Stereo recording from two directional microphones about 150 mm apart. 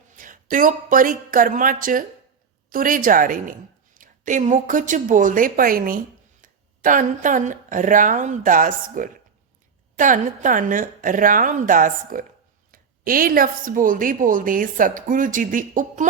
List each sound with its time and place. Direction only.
0.2 s a woman's voice: 60° right (ahead or behind)
6.4 s a woman's voice: 60° right (ahead or behind)